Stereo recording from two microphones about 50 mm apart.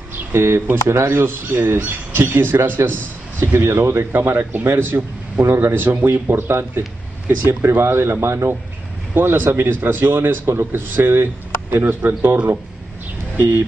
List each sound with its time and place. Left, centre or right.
0.1 s a sound: right
0.8 s speech: right
9.1 s speech: right